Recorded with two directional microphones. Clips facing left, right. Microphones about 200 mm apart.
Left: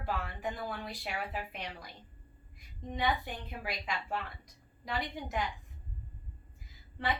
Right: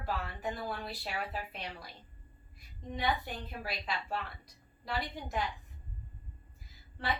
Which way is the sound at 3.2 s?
15° left (ahead or behind).